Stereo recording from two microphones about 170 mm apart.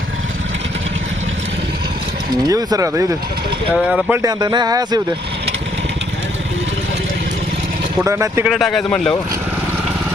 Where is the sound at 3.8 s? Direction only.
5° right (ahead or behind).